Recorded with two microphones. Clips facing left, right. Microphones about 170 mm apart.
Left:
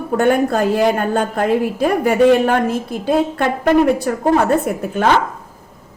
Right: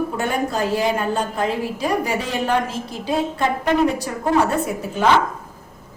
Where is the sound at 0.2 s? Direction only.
55° left (ahead or behind).